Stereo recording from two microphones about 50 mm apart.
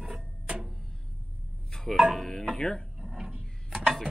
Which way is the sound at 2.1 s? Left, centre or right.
Centre.